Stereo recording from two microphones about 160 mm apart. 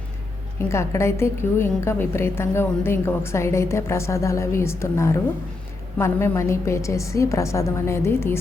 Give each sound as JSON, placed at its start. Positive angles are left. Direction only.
{"t": 0.7, "sound": "a woman's voice", "side_deg": 15}